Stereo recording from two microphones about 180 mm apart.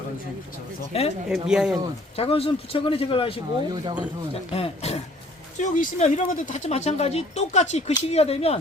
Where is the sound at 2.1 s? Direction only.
30° left (ahead or behind).